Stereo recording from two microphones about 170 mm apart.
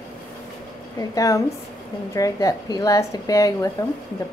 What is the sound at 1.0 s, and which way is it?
Speech, 20° left (ahead or behind).